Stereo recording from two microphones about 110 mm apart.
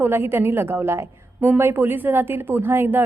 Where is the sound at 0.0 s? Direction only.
20° right (ahead or behind).